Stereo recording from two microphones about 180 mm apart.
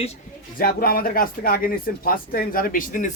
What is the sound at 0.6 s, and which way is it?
Speech, 55° left (ahead or behind).